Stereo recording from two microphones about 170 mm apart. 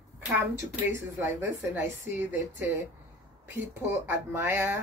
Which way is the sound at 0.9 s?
15° right (ahead or behind).